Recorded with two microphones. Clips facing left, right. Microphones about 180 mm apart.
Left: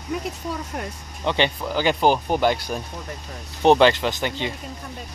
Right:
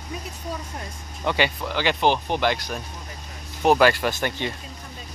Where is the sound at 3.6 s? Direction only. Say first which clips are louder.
Left 2 dB; 25° left (ahead or behind).